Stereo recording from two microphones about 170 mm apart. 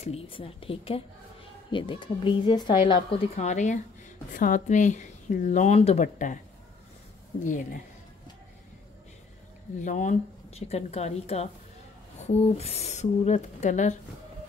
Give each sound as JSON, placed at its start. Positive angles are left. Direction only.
{"t": 0.0, "sound": "a woman's voice", "side_deg": 35}
{"t": 3.3, "sound": "speech", "side_deg": 45}
{"t": 7.4, "sound": "speech", "side_deg": 50}
{"t": 9.8, "sound": "speech", "side_deg": 45}